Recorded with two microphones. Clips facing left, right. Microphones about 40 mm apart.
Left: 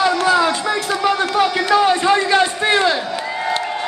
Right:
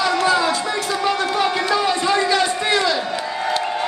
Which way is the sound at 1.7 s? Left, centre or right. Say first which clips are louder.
Left 4 dB; left.